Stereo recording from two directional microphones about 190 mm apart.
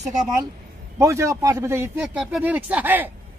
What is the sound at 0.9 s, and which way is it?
A man's voice, 15° right (ahead or behind).